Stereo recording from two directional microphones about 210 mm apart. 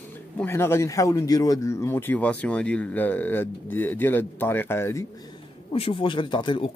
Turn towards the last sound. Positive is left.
turn(degrees=25)  # may be behind; listen again after turning